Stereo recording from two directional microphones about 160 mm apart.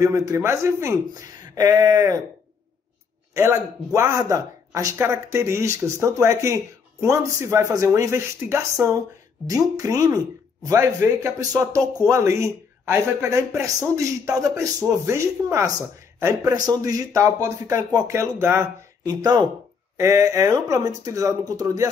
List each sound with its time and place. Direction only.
0.0 s speech: 20° right (ahead or behind)
3.3 s speech: 20° right (ahead or behind)